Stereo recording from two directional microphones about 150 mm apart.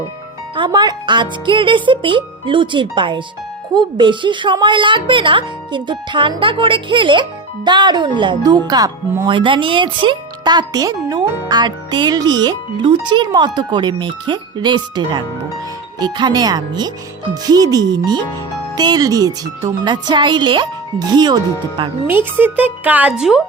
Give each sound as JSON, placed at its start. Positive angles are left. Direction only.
{"t": 0.5, "sound": "a child's voice", "side_deg": -30}
{"t": 22.0, "sound": "a child's voice", "side_deg": -15}